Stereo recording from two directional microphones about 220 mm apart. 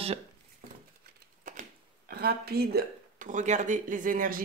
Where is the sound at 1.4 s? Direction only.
40° right (ahead or behind).